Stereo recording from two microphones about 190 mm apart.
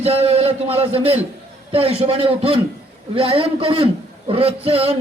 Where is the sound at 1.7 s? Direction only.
30° right (ahead or behind).